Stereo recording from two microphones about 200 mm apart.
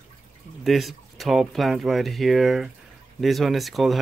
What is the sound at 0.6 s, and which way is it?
Speech, centre (ahead or behind).